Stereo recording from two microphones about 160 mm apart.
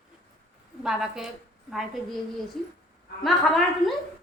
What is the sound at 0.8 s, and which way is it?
Speech, 5° right (ahead or behind).